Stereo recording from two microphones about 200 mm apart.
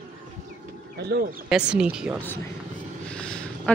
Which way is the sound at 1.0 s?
55° right (ahead or behind).